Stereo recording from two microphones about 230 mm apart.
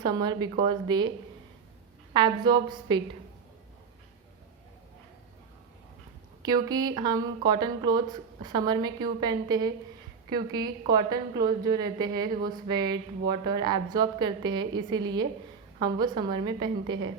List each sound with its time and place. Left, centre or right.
0.0 s a woman's voice: centre
2.1 s a woman's voice: centre
6.7 s a woman's voice: centre